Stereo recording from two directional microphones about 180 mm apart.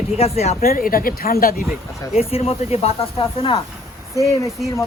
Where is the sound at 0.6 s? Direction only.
55° left (ahead or behind).